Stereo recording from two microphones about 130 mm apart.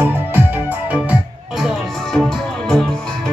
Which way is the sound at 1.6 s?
Centre (ahead or behind).